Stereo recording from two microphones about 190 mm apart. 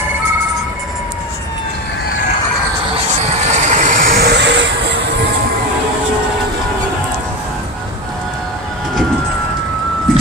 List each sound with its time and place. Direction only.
3.5 s vehicle: 40° right (ahead or behind); by 4.6 s 65° right (ahead or behind)